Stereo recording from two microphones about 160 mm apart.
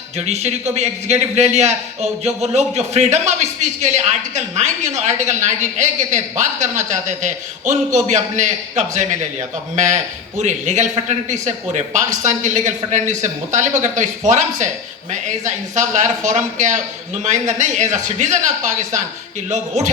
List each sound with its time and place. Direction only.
0.3 s a man's voice: 45° right (ahead or behind)